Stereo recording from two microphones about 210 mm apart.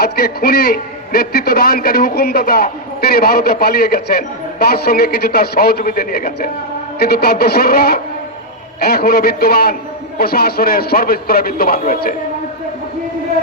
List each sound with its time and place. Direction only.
0.0 s a man's voice: 50° left (ahead or behind)